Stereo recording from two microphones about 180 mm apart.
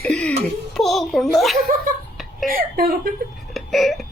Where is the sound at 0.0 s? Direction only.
5° left (ahead or behind).